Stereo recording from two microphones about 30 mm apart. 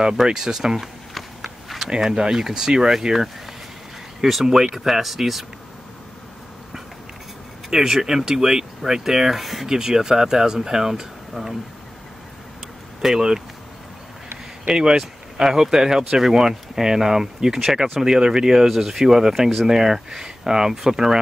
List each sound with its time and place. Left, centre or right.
0.0 s speech: centre
1.9 s speech: right
4.2 s speech: centre
7.7 s speech: centre
9.4 s speech: centre
9.7 s speech: right
13.0 s speech: centre
14.7 s speech: right